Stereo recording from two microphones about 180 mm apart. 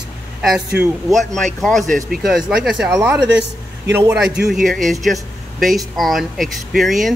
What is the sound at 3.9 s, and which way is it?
Speech, 15° right (ahead or behind).